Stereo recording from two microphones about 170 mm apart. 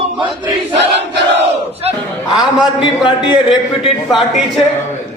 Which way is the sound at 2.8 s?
30° left (ahead or behind).